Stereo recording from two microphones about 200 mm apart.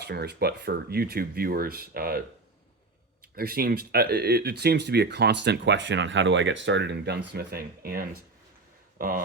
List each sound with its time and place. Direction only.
0.0 s speech: 55° right (ahead or behind)
3.3 s speech: 50° right (ahead or behind)